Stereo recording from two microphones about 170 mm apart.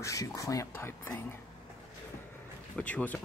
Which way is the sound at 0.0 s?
20° left (ahead or behind).